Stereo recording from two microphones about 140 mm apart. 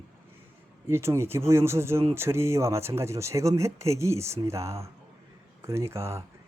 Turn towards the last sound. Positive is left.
turn(degrees=-20)  # may be behind; listen again after turning